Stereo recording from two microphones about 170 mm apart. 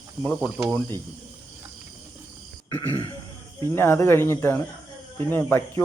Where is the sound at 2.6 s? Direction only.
20° left (ahead or behind).